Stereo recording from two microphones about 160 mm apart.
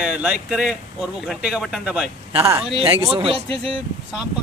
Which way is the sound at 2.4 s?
20° right (ahead or behind).